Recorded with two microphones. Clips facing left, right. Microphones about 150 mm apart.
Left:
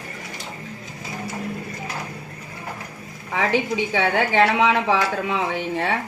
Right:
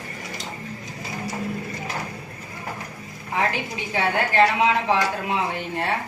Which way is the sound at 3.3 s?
90° left.